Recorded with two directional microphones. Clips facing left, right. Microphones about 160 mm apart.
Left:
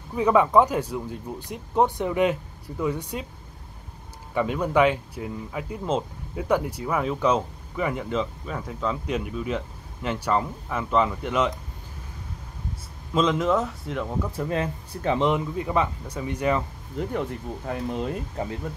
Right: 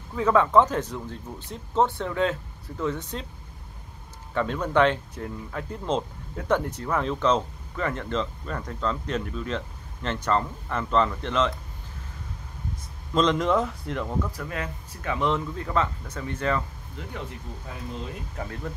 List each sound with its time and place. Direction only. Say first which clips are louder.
0.1 s speech: left 1 dB; 15° left (ahead or behind)
4.3 s speech: left 2 dB; 10° left (ahead or behind)
13.1 s speech: even; 5° left (ahead or behind)
14.3 s speech: left 6 dB; 25° left (ahead or behind)
17.0 s speech: left 10 dB; 45° left (ahead or behind)
18.3 s speech: left 5 dB; 25° left (ahead or behind)